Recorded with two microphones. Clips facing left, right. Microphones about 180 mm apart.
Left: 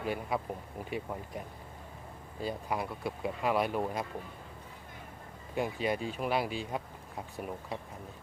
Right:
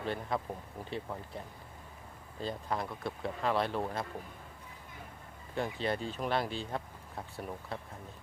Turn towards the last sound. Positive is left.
turn(degrees=15)  # may be behind; listen again after turning